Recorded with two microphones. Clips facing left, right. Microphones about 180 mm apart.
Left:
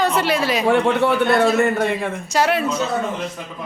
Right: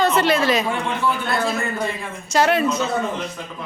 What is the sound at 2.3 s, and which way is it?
Speech, 10° left (ahead or behind).